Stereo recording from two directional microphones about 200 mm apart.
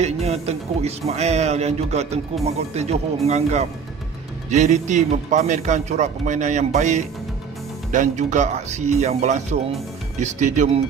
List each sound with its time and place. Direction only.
0.0 s speech: 30° right (ahead or behind)